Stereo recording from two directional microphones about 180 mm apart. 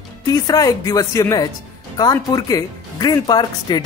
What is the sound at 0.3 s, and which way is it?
Speech, 20° left (ahead or behind).